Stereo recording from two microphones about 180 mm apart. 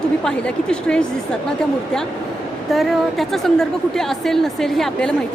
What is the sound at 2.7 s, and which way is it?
A woman's voice, centre (ahead or behind).